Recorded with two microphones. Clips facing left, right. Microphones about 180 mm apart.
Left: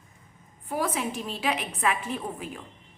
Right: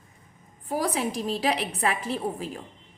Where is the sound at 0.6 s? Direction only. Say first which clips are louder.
Right 2 dB; 40° right (ahead or behind).